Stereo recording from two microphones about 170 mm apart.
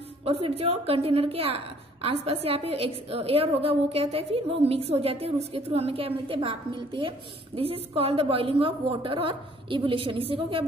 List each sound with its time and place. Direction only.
0.2 s a woman's voice: 35° right (ahead or behind)